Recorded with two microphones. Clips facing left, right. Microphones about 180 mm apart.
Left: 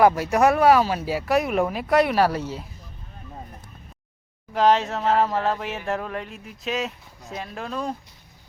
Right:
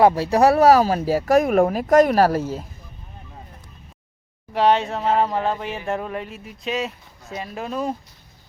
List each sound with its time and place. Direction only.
0.0 s speech: 30° right (ahead or behind); by 2.6 s 45° right (ahead or behind)
4.5 s speech: centre (ahead or behind)